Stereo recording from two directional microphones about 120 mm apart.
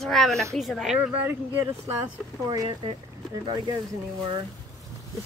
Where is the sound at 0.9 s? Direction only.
15° right (ahead or behind).